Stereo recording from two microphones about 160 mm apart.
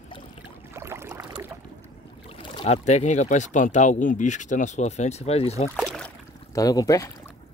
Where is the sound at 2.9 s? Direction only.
45° left (ahead or behind).